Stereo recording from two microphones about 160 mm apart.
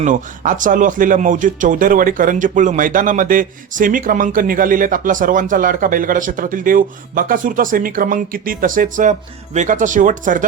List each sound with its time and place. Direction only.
0.0 s speech: 55° right (ahead or behind)